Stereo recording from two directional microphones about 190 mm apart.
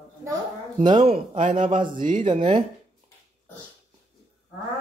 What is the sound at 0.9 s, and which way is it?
A man's voice, 35° right (ahead or behind).